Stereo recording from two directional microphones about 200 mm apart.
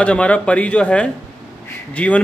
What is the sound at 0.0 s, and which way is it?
A woman's voice, 5° left (ahead or behind).